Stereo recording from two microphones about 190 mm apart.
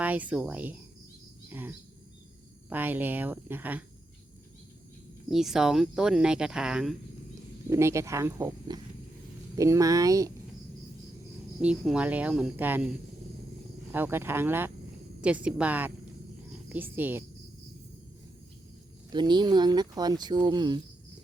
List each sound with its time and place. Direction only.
0.0 s speech: 10° right (ahead or behind)
1.5 s cricket: 10° right (ahead or behind)
2.6 s speech: 10° right (ahead or behind)
5.3 s speech: centre (ahead or behind)
7.7 s speech: 15° right (ahead or behind)
11.6 s speech: 5° right (ahead or behind)
13.9 s speech: 10° right (ahead or behind)
19.1 s speech: 25° right (ahead or behind)